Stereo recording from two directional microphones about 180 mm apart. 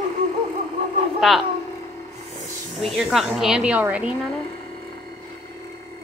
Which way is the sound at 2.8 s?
Centre (ahead or behind).